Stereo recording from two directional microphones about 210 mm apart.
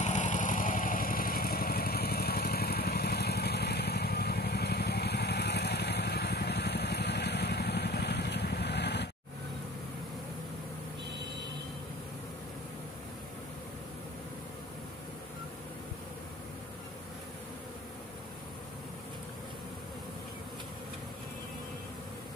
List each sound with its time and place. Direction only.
0.0 s vehicle: 35° left (ahead or behind); by 9.1 s 55° left (ahead or behind)